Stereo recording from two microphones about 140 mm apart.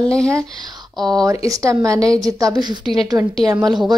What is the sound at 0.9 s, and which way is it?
Speech, centre (ahead or behind).